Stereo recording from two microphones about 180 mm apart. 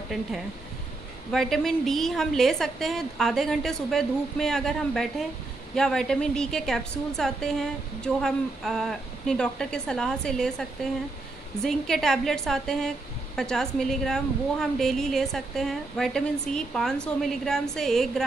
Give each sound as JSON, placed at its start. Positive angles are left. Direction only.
{"t": 1.3, "sound": "a woman's voice", "side_deg": 0}